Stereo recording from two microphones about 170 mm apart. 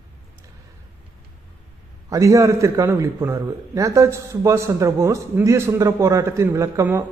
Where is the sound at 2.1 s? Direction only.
20° right (ahead or behind).